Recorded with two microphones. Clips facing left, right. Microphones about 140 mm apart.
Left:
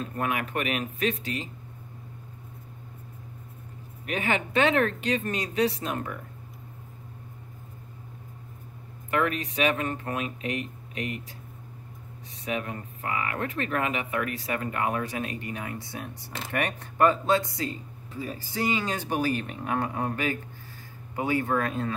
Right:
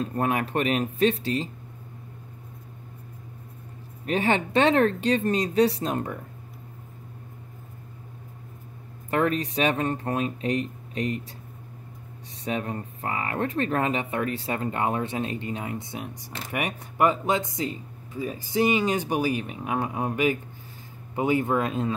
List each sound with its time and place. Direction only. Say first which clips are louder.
0.0 s speech: right 4 dB; 35° right (ahead or behind)
4.0 s speech: right 4 dB; 35° right (ahead or behind)
9.1 s speech: right 3 dB; 35° right (ahead or behind)
12.4 s speech: right 2 dB; 35° right (ahead or behind)